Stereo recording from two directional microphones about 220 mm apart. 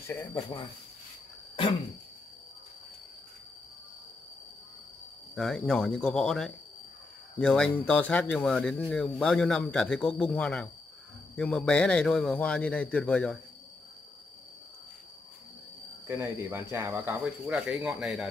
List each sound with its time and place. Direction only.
0.0 s speech: 10° left (ahead or behind)
5.3 s speech: centre (ahead or behind)
16.1 s speech: 10° right (ahead or behind)